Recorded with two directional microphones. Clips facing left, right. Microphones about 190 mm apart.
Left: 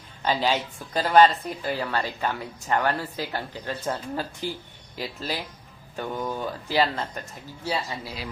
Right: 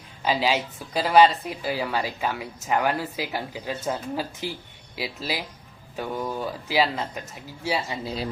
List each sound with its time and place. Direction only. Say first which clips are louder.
0.2 s speech: right 1 dB; 5° right (ahead or behind)
8.0 s speech: right 6 dB; 30° right (ahead or behind)